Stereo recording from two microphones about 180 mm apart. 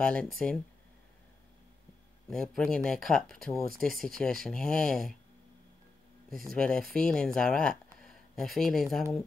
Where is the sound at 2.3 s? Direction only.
5° left (ahead or behind).